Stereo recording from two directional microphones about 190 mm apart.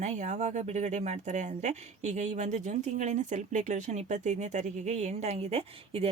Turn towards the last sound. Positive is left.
turn(degrees=-35)  # may be behind; listen again after turning